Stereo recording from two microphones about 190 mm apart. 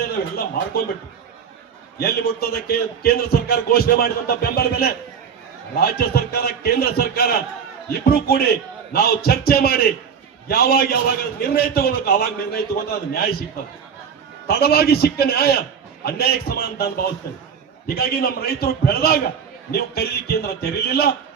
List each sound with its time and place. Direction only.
0.0 s a man's voice: 55° left (ahead or behind)
2.0 s a man's voice: 55° left (ahead or behind)
14.4 s a man's voice: 55° left (ahead or behind)